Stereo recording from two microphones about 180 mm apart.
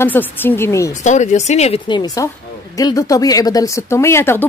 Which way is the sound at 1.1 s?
40° left (ahead or behind).